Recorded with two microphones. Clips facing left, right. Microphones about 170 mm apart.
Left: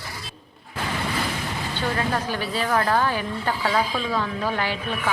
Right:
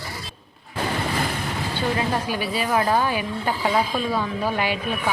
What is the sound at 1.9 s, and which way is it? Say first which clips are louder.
A woman's voice: right 1 dB; 10° right (ahead or behind).